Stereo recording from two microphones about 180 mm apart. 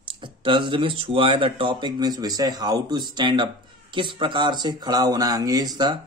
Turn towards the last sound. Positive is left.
turn(degrees=-20)  # may be behind; listen again after turning